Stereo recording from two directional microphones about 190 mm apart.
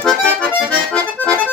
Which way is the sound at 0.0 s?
5° left (ahead or behind).